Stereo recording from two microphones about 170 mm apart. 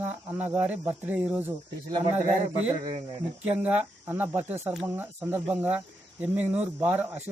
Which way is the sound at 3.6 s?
5° right (ahead or behind).